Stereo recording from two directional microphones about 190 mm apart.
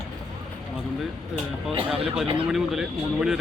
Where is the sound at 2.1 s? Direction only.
Centre (ahead or behind).